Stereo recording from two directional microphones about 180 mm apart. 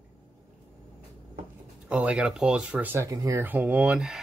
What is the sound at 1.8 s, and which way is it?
Speech, 5° right (ahead or behind).